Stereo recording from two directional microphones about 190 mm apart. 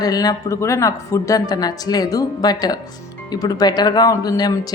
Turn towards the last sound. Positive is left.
turn(degrees=20)  # may be behind; listen again after turning